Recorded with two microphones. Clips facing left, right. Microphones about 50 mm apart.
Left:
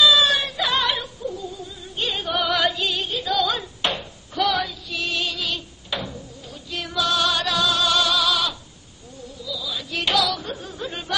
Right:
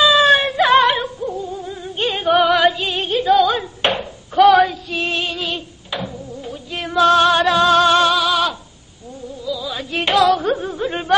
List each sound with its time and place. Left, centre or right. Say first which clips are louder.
0.0 s music: right 5 dB; right
2.5 s music: right 6 dB; right
3.0 s music: right 12 dB; right
3.8 s a sound: right 6 dB; right
4.4 s female singing: right 12 dB; centre
4.9 s music: right 5 dB; right
5.9 s a sound: right 3 dB; centre
6.4 s music: right 4 dB; right